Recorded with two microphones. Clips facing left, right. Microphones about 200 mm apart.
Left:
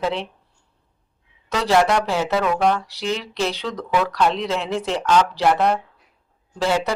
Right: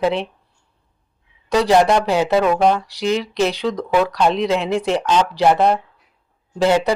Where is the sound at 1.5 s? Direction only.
15° right (ahead or behind).